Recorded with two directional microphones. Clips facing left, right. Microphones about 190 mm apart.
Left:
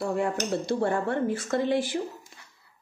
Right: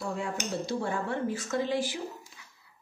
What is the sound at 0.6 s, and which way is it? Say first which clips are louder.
Speech: left 6 dB; 55° left (ahead or behind).